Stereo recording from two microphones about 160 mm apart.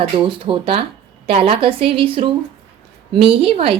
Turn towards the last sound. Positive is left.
turn(degrees=-35)  # may be behind; listen again after turning